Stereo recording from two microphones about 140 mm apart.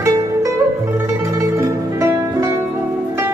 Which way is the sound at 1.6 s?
20° right (ahead or behind).